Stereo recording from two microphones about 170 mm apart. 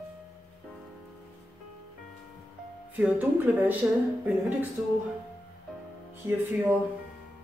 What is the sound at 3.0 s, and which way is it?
Speech, 10° right (ahead or behind).